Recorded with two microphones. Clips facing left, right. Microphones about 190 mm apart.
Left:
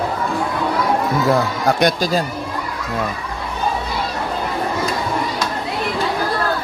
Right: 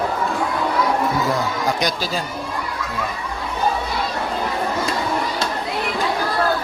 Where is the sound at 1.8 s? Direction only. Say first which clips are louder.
Left 6 dB; 55° left (ahead or behind).